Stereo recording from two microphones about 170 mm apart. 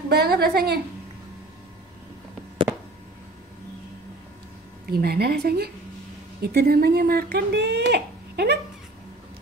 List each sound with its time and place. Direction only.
0.1 s a woman's voice: 65° right (ahead or behind)
2.7 s a sound: 15° right (ahead or behind)
4.8 s a woman's voice: 65° right (ahead or behind); by 8.5 s 80° right